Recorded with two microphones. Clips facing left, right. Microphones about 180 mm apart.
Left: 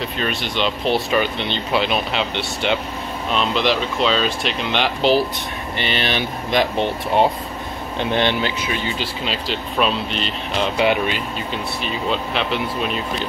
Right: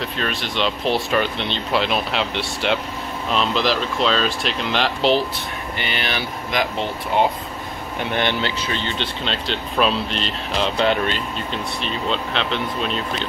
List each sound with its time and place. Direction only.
0.0 s speech: centre (ahead or behind)
6.0 s speech: 25° left (ahead or behind); by 13.3 s 5° left (ahead or behind)